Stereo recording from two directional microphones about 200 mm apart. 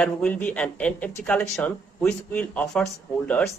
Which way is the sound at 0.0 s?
5° left (ahead or behind).